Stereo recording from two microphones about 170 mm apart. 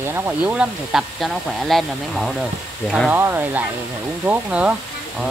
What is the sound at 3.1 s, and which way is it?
Speech, 10° right (ahead or behind).